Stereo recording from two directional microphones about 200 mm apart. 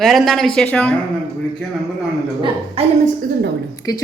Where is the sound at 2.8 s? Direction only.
30° right (ahead or behind).